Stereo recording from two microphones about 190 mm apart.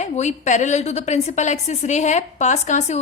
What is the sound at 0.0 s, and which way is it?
A woman's voice, 40° left (ahead or behind).